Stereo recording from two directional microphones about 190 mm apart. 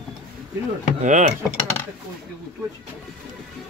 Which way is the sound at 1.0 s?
40° right (ahead or behind).